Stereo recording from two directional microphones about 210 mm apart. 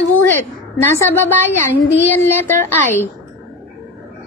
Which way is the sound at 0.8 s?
10° left (ahead or behind).